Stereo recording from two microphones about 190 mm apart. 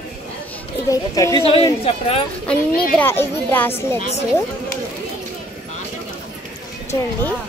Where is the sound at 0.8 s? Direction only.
20° left (ahead or behind).